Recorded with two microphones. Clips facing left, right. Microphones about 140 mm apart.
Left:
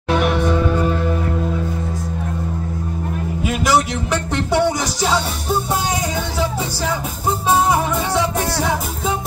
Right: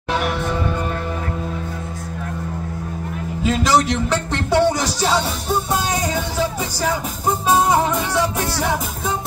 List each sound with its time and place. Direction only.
3.4 s music: 15° left (ahead or behind)
8.1 s music: 20° left (ahead or behind)